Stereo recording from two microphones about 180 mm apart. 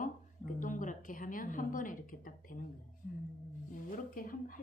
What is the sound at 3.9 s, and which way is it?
Speech, 50° left (ahead or behind).